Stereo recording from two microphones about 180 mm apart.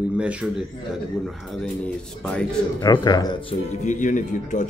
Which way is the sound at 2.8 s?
25° left (ahead or behind).